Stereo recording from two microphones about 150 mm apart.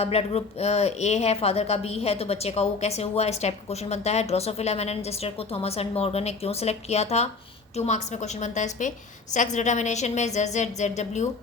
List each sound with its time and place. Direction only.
0.0 s speech: 40° left (ahead or behind)